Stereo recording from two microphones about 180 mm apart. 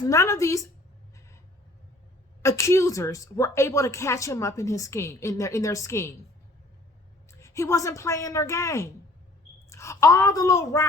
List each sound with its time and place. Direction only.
0.1 s a woman's voice: 15° left (ahead or behind)
2.4 s a woman's voice: 15° left (ahead or behind)
7.3 s a woman's voice: 15° left (ahead or behind)